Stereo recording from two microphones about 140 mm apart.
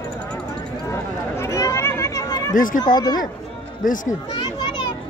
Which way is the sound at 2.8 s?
30° left (ahead or behind).